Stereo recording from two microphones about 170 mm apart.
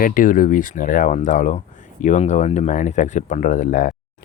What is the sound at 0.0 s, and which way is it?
Speech, 55° left (ahead or behind).